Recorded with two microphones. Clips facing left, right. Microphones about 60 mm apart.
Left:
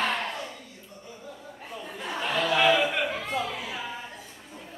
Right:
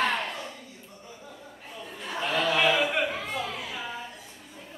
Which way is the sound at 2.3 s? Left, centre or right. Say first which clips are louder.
Left 2 dB; centre.